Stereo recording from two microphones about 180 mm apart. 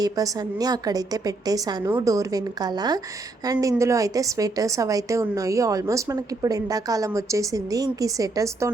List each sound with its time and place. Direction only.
0.0 s a woman's voice: 20° right (ahead or behind)